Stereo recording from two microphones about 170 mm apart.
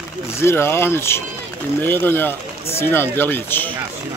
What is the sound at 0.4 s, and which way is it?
Speech, 15° left (ahead or behind).